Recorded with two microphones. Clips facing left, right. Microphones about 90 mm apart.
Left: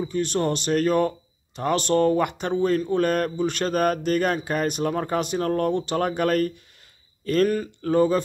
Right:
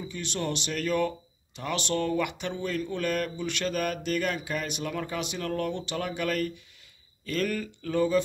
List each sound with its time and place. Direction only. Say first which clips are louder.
0.0 s speech: left 9 dB; 40° left (ahead or behind)